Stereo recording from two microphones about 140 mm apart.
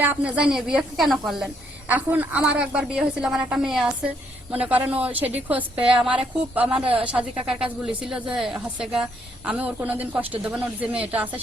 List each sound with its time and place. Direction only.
0.0 s speech: 10° right (ahead or behind)
1.9 s a woman's voice: 10° right (ahead or behind)